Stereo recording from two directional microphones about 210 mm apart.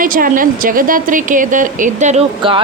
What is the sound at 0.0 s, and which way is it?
Speech, 40° right (ahead or behind).